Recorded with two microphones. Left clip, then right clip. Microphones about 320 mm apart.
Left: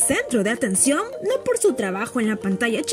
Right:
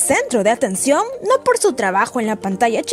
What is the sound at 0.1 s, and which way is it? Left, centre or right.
Speech, centre.